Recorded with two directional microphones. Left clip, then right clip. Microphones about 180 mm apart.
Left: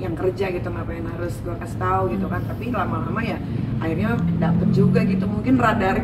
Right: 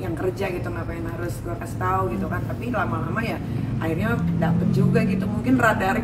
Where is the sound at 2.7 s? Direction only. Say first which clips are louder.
Left 1 dB; 15° right (ahead or behind).